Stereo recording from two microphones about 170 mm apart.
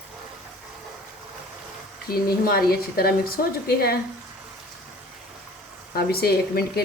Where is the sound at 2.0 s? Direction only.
60° left (ahead or behind).